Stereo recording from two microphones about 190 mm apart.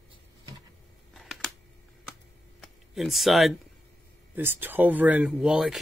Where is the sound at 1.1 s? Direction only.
Centre (ahead or behind).